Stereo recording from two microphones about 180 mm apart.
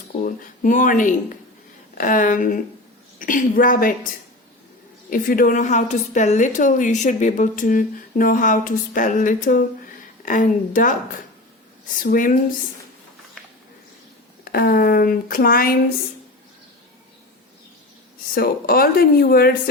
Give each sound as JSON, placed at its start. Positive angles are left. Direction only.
{"t": 0.6, "sound": "a woman's voice", "side_deg": 45}
{"t": 5.1, "sound": "a woman's voice", "side_deg": 50}
{"t": 11.9, "sound": "a woman's voice", "side_deg": 50}
{"t": 14.4, "sound": "a woman's voice", "side_deg": 55}
{"t": 18.3, "sound": "speech", "side_deg": 55}